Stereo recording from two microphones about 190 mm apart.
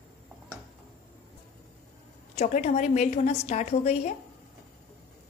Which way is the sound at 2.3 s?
35° left (ahead or behind).